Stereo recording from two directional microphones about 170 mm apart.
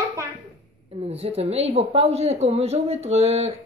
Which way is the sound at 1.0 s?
35° right (ahead or behind).